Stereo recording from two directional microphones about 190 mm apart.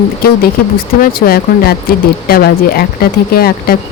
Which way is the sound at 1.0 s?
50° left (ahead or behind).